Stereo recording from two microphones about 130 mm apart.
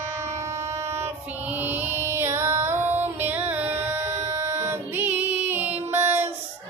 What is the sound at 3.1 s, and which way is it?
Music, 15° right (ahead or behind).